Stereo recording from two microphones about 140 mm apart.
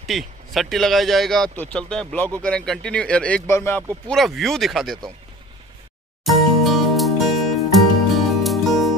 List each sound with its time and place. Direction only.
0.0 s speech: centre (ahead or behind); by 3.8 s 15° left (ahead or behind)
4.1 s speech: centre (ahead or behind)
6.2 s music: centre (ahead or behind)